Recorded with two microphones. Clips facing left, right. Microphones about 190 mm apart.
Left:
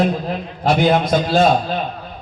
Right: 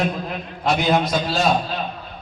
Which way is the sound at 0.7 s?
50° left (ahead or behind).